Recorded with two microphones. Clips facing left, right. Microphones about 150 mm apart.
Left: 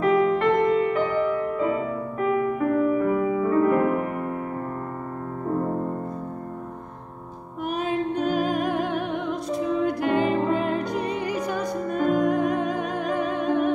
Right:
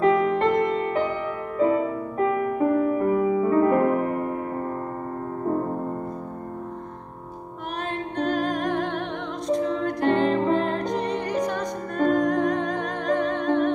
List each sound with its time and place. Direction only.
0.0 s music: 35° right (ahead or behind)
2.1 s music: 30° right (ahead or behind)
7.9 s music: 5° left (ahead or behind)